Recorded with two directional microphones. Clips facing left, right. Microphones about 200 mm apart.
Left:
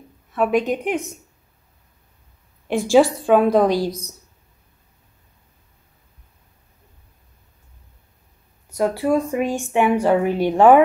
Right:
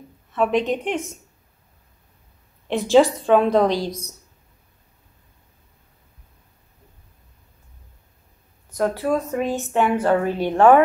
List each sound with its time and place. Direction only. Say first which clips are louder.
0.3 s speech: left 1 dB; 10° left (ahead or behind)
2.9 s speech: even; 10° left (ahead or behind)
8.6 s speech: left 2 dB; 10° left (ahead or behind)